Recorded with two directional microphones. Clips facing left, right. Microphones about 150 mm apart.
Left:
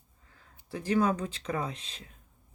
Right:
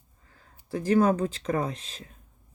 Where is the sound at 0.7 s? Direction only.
40° right (ahead or behind).